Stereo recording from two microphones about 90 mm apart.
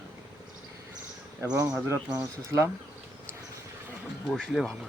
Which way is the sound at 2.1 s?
35° right (ahead or behind).